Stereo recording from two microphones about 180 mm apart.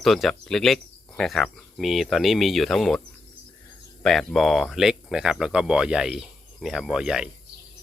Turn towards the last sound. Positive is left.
turn(degrees=-5)  # may be behind; listen again after turning